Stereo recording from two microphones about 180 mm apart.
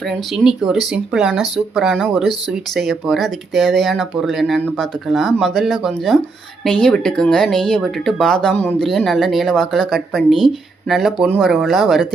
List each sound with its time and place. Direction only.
0.1 s speech: centre (ahead or behind)